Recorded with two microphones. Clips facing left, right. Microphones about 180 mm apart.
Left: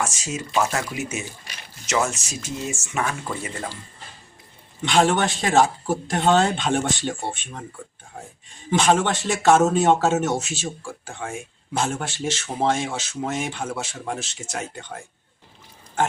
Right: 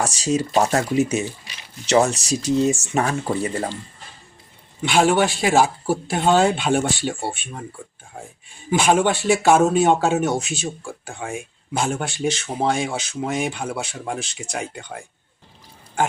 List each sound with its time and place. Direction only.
0.0 s speech: 35° right (ahead or behind)
4.9 s speech: 5° right (ahead or behind)
8.7 s speech: 10° right (ahead or behind)
10.3 s speech: 5° left (ahead or behind)